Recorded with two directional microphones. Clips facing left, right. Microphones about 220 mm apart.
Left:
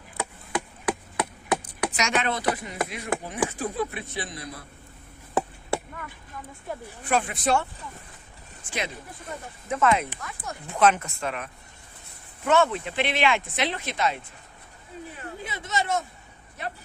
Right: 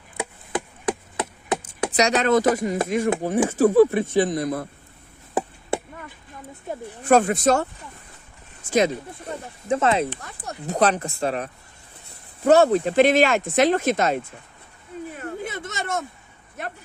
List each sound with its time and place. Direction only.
1.1 s a sound: 25° right (ahead or behind)
1.9 s speech: 35° right (ahead or behind)
5.3 s chop: 20° right (ahead or behind)
6.7 s speech: 20° right (ahead or behind)
7.0 s speech: 45° right (ahead or behind)
9.6 s speech: 30° right (ahead or behind)
15.2 s a sound: 50° right (ahead or behind)